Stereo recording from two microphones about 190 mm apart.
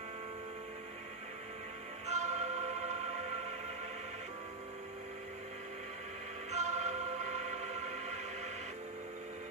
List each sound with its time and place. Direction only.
2.0 s music: 35° right (ahead or behind)
6.5 s music: 35° right (ahead or behind)